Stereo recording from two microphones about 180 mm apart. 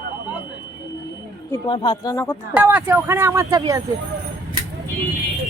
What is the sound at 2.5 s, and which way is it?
Speech, 10° right (ahead or behind).